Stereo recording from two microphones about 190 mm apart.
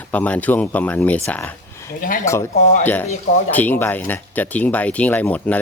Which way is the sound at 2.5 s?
40° left (ahead or behind).